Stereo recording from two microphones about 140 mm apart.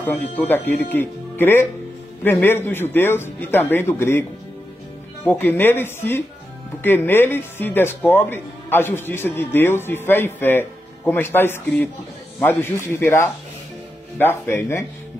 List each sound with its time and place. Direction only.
0.0 s speech: 15° left (ahead or behind)